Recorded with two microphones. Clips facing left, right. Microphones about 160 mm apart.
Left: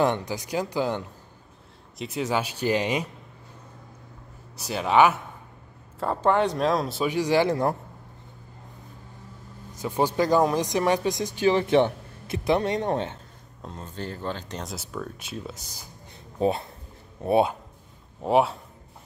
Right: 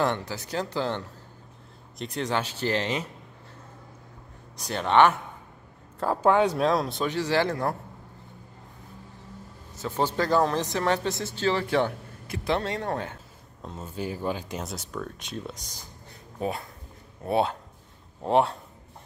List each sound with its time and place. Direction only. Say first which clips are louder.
0.0 s speech: left 3 dB; 15° left (ahead or behind)
4.6 s speech: left 1 dB; 5° left (ahead or behind)
9.8 s speech: left 3 dB; 15° left (ahead or behind)
13.6 s speech: right 2 dB; centre (ahead or behind)
16.3 s speech: left 6 dB; 25° left (ahead or behind)
17.2 s speech: left 4 dB; 15° left (ahead or behind)
18.2 s speech: left 1 dB; centre (ahead or behind)